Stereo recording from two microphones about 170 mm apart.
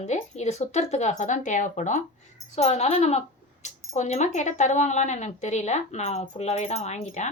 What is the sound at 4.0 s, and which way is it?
Speech, 40° left (ahead or behind).